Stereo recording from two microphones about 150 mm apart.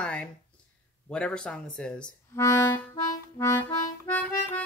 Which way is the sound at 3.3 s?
20° left (ahead or behind).